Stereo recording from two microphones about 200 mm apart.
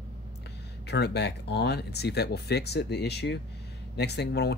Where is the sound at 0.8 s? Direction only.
55° left (ahead or behind).